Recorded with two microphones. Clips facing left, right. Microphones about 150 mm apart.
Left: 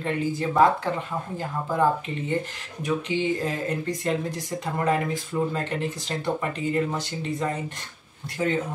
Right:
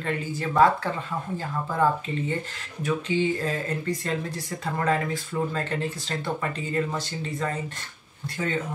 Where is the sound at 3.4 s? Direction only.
20° left (ahead or behind).